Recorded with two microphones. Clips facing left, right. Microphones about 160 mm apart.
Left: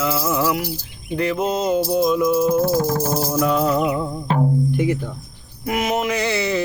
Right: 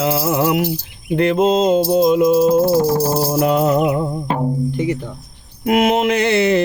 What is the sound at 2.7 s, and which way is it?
Jingle bell, 35° right (ahead or behind).